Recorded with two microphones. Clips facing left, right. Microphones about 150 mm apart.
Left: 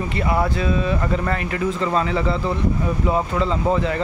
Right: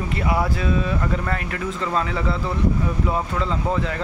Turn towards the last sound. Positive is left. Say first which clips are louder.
# left 4 dB
turn(degrees=0)  # may be behind; listen again after turning